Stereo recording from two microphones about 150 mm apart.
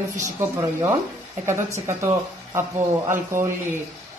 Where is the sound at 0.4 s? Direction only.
15° right (ahead or behind).